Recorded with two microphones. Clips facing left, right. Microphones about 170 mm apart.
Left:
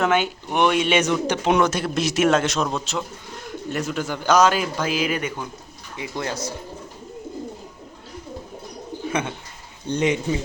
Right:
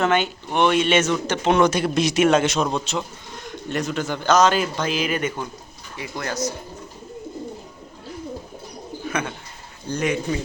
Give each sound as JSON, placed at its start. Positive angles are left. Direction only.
{"t": 0.0, "sound": "a man's voice", "side_deg": 10}
{"t": 1.5, "sound": "a man's voice", "side_deg": 0}
{"t": 6.0, "sound": "speech", "side_deg": 25}
{"t": 9.0, "sound": "bird", "side_deg": 25}
{"t": 9.9, "sound": "speech", "side_deg": 20}